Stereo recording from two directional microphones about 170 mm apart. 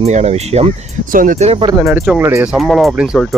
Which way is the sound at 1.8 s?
15° right (ahead or behind).